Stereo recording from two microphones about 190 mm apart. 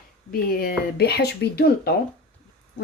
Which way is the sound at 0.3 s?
50° left (ahead or behind).